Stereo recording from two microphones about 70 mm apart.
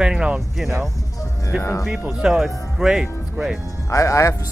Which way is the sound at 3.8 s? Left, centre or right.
Left.